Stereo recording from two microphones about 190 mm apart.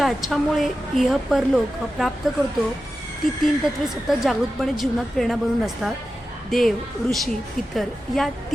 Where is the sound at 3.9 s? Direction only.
Centre (ahead or behind).